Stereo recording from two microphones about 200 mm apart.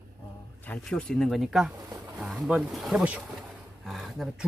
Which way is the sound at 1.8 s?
15° right (ahead or behind).